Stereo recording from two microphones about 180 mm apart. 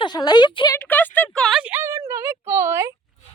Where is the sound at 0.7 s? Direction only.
10° left (ahead or behind); by 2.9 s 15° right (ahead or behind).